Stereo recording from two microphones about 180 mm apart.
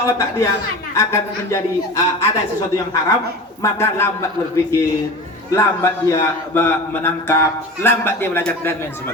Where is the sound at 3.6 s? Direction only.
15° left (ahead or behind).